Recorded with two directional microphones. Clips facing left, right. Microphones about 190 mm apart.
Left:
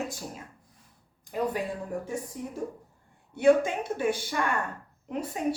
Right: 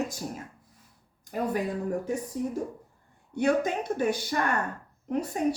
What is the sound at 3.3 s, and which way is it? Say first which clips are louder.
Speech: left 3 dB; 40° right (ahead or behind).